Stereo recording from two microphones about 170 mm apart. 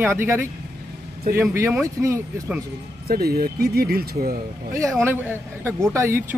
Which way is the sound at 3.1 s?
65° right (ahead or behind).